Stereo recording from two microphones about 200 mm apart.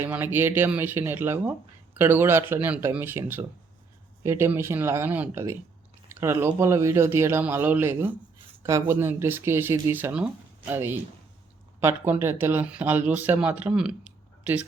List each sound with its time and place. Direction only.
0.0 s speech: 10° right (ahead or behind)